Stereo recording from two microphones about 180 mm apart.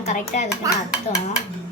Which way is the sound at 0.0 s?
40° left (ahead or behind).